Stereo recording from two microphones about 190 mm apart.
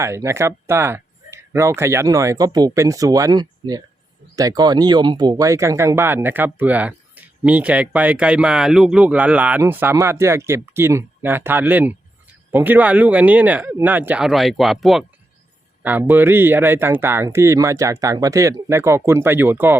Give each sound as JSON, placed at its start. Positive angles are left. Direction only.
{"t": 0.0, "sound": "speech", "side_deg": -15}